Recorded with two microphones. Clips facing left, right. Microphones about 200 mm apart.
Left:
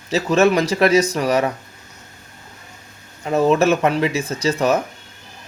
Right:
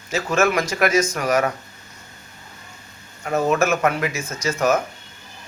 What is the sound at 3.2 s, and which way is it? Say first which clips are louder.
Speech: left 4 dB; 30° left (ahead or behind).